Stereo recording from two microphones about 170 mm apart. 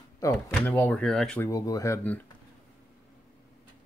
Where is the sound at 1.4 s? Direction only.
20° left (ahead or behind).